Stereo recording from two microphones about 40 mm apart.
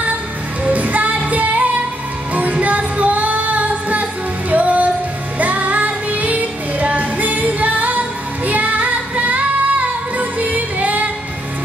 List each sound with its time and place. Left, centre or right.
0.7 s music: right